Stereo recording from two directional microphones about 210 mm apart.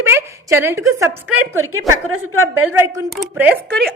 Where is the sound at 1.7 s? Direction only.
85° right.